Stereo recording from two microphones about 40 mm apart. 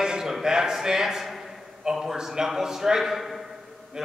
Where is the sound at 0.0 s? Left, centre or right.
Centre.